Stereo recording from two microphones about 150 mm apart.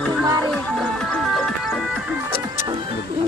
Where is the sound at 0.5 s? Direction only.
5° left (ahead or behind).